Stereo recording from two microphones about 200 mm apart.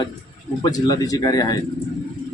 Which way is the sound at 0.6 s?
20° left (ahead or behind).